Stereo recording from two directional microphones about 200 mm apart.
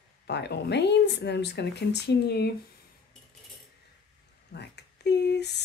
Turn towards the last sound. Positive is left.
turn(degrees=60)  # may be behind; listen again after turning